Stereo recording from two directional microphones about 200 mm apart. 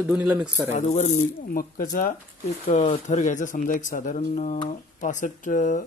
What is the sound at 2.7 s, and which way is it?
Speech, 35° left (ahead or behind).